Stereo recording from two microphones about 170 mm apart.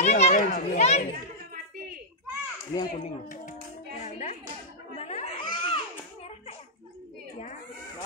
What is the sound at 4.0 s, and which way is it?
Music, 40° left (ahead or behind).